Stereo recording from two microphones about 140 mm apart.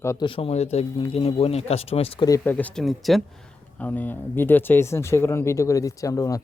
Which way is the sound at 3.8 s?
10° left (ahead or behind).